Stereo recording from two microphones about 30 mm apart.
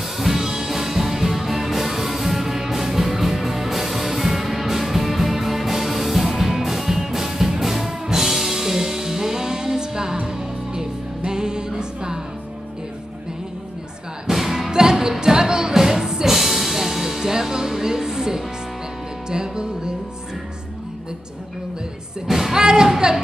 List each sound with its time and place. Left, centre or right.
0.4 s music: centre
14.2 s music: centre
14.7 s music: right
16.3 s music: centre; by 20.0 s right
22.3 s music: centre
22.6 s music: right